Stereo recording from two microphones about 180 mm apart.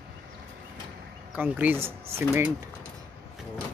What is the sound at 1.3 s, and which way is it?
Speech, 10° right (ahead or behind).